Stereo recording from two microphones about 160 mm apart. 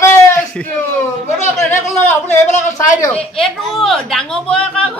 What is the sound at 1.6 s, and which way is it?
Speech, 10° left (ahead or behind).